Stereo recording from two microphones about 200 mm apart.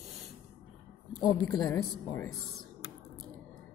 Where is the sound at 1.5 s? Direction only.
15° left (ahead or behind).